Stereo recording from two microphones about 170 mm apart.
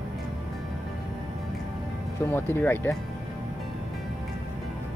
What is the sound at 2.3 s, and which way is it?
Speech, 10° left (ahead or behind).